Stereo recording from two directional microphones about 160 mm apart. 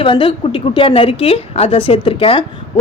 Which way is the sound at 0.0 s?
30° left (ahead or behind).